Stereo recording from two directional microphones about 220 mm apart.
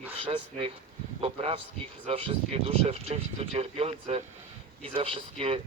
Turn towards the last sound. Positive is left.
turn(degrees=-25)  # may be behind; listen again after turning